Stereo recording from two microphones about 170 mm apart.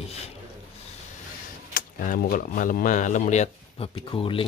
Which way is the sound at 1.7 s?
55° left (ahead or behind).